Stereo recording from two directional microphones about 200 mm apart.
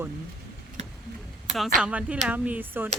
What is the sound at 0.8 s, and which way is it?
Vehicle, 35° right (ahead or behind).